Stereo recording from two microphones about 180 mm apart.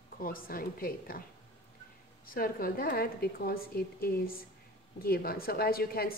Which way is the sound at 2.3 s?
55° left (ahead or behind).